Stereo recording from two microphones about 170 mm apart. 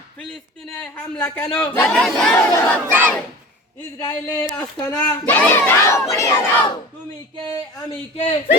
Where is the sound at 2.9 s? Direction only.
10° right (ahead or behind).